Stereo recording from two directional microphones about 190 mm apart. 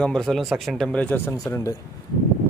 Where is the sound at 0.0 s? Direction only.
5° left (ahead or behind).